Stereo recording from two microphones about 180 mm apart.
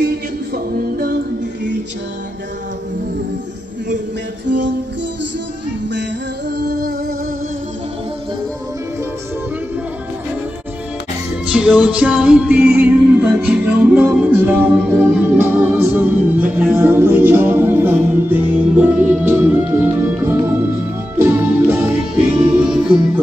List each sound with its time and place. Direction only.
0.7 s music: 55° right (ahead or behind)
4.5 s music: 85° right
11.4 s music: 5° right (ahead or behind)